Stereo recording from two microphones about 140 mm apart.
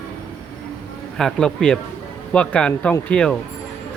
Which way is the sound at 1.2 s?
5° left (ahead or behind).